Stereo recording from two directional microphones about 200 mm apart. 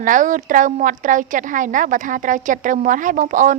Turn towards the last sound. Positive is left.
turn(degrees=-40)  # may be behind; listen again after turning